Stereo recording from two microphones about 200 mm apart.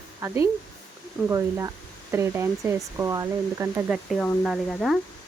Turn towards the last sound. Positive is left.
turn(degrees=0)  # may be behind; listen again after turning